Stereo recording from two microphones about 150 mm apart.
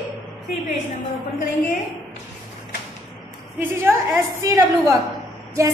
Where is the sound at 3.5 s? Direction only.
15° right (ahead or behind).